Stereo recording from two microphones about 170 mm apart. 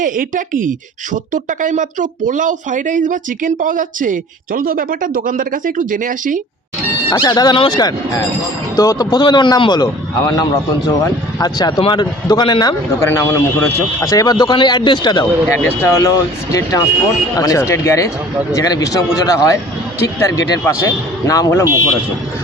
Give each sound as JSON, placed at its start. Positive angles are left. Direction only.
{"t": 0.0, "sound": "speech", "side_deg": -50}
{"t": 7.1, "sound": "a man's voice", "side_deg": 25}